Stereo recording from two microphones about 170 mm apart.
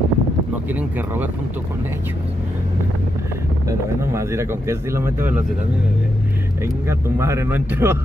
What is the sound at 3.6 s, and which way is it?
Speech, 15° right (ahead or behind).